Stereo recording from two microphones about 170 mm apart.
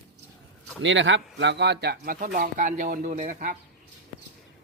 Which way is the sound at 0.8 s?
90° right.